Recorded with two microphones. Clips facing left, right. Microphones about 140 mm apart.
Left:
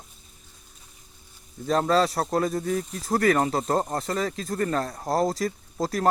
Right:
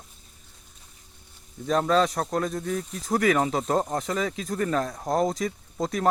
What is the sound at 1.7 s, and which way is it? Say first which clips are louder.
Speech: even; centre (ahead or behind).